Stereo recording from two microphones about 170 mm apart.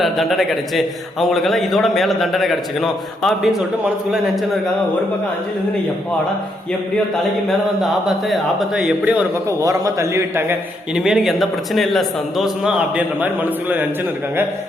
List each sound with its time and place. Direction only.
0.0 s a man's voice: centre (ahead or behind)
7.8 s speech: centre (ahead or behind)
10.9 s a man's voice: 5° right (ahead or behind)